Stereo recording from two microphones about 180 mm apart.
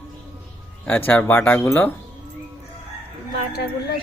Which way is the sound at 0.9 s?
10° left (ahead or behind).